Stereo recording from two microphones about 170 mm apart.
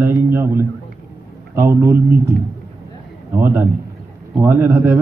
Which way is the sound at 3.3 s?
10° right (ahead or behind).